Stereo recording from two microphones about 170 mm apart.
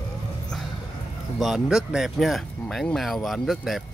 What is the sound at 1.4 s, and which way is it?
Speech, centre (ahead or behind).